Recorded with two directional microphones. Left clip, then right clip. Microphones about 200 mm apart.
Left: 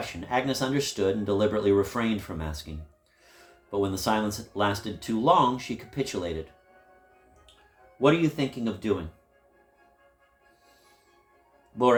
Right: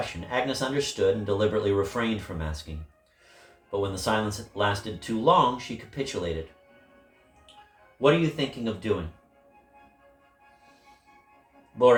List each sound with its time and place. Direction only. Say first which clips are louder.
0.0 s speech: even; 60° left (ahead or behind)
3.7 s speech: even; 60° left (ahead or behind)
8.0 s speech: even; 60° left (ahead or behind)